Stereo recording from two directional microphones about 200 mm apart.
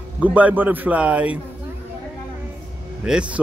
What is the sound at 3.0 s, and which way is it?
Speech, 5° right (ahead or behind).